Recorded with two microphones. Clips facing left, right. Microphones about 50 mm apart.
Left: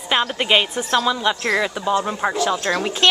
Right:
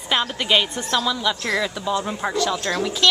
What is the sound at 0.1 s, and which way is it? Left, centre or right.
A woman's voice, left.